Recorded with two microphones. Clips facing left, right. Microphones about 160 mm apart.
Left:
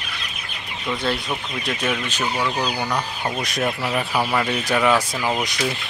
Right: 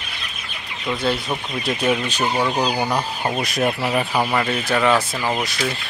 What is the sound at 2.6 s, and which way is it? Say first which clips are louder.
Speech: right 3 dB; 30° right (ahead or behind).